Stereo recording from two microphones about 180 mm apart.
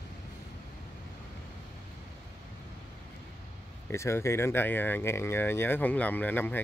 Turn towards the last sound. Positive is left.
turn(degrees=10)  # may be behind; listen again after turning